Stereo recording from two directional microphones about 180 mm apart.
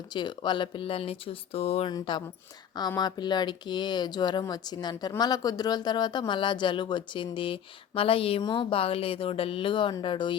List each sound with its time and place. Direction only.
0.1 s speech: 25° left (ahead or behind)